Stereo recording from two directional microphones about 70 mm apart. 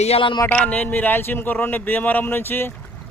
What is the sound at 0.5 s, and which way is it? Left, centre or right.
Speech, centre.